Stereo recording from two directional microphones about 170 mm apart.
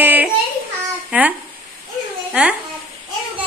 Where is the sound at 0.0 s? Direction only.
10° right (ahead or behind).